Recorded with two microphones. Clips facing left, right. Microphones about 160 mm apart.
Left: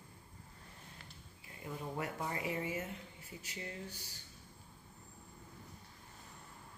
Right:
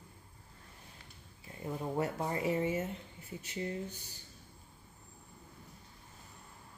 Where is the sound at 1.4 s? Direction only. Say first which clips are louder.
Right 6 dB; 30° right (ahead or behind).